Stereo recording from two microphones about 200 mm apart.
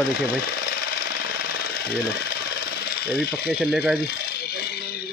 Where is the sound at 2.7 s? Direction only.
50° left (ahead or behind).